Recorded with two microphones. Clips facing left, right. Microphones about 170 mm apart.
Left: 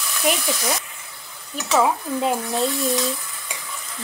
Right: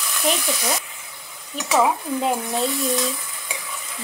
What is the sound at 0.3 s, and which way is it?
Speech, 5° left (ahead or behind).